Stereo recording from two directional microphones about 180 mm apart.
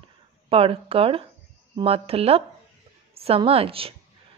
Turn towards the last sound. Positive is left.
turn(degrees=-30)  # may be behind; listen again after turning